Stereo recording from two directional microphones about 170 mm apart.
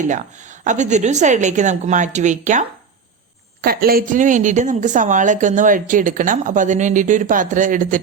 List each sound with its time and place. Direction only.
0.0 s a woman's voice: 45° right (ahead or behind)
3.6 s a woman's voice: 60° right (ahead or behind)